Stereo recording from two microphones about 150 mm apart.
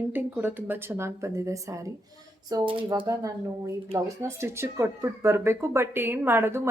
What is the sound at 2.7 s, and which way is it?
Speech, 35° right (ahead or behind).